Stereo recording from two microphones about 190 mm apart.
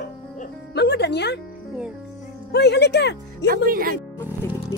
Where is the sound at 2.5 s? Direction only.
60° left (ahead or behind).